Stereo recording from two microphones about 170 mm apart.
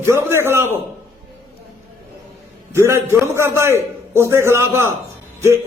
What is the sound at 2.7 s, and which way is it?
A man's voice, 15° right (ahead or behind).